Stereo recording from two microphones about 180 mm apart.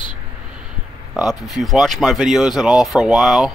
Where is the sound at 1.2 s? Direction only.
Centre (ahead or behind).